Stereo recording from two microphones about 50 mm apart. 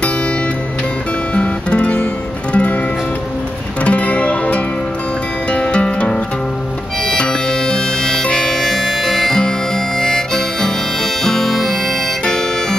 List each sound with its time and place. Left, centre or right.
1.3 s guitar: left
2.5 s music: left
3.8 s music: left
7.1 s harmonica: centre